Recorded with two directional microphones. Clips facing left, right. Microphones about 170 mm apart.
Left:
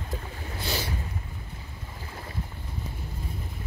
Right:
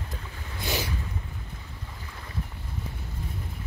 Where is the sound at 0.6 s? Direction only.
15° right (ahead or behind).